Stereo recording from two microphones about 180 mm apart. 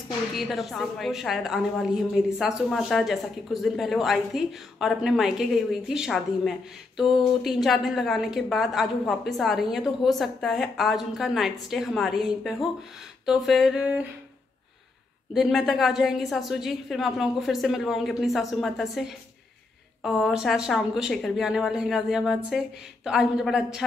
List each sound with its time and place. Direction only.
0.3 s a woman's voice: centre (ahead or behind)
15.3 s a woman's voice: centre (ahead or behind)